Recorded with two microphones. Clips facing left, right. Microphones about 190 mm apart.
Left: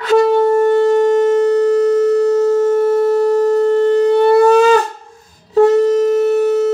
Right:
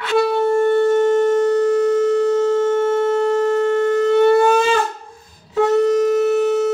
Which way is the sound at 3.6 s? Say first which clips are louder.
Left 4 dB; 35° left (ahead or behind).